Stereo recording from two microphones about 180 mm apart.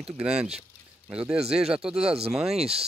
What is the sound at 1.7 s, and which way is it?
Speech, 5° right (ahead or behind).